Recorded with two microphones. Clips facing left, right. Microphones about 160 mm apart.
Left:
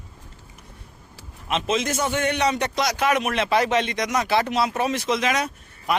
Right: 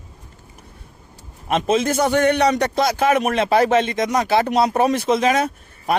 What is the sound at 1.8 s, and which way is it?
Speech, 55° right (ahead or behind).